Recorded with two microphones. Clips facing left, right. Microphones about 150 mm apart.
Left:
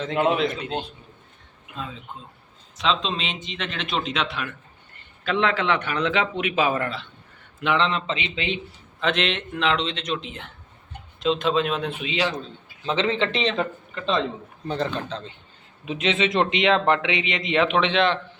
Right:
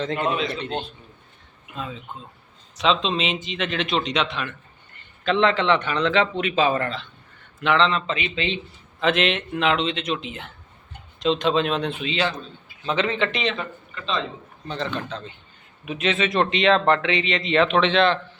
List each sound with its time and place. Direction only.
0.5 s speech: 10° left (ahead or behind)
2.7 s speech: centre (ahead or behind); by 8.6 s 15° left (ahead or behind)
9.0 s speech: 5° right (ahead or behind); by 12.3 s 10° left (ahead or behind)
12.8 s speech: 25° left (ahead or behind)
13.6 s speech: 60° left (ahead or behind)
14.7 s speech: 40° left (ahead or behind); by 18.2 s 15° left (ahead or behind)